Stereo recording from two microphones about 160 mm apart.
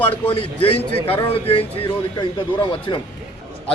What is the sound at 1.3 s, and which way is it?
A man's voice, 35° left (ahead or behind).